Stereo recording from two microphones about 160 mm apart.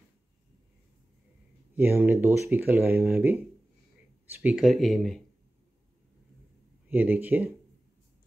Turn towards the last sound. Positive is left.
turn(degrees=-10)  # may be behind; listen again after turning